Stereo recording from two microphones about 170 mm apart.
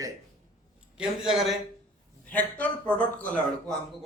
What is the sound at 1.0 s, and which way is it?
A man's voice, centre (ahead or behind).